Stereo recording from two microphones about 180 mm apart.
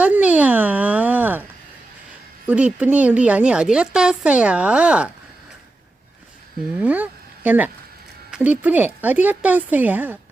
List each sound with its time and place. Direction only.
0.0 s a sound: 5° right (ahead or behind)
2.5 s a woman's voice: 10° right (ahead or behind)
6.7 s a woman's voice: 10° right (ahead or behind)